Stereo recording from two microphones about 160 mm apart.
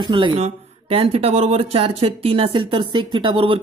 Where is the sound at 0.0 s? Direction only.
30° right (ahead or behind).